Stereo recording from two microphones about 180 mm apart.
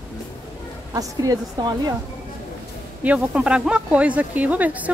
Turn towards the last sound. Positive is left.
turn(degrees=-10)  # may be behind; listen again after turning